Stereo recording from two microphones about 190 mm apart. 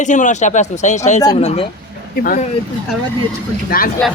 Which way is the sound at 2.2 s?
50° left (ahead or behind).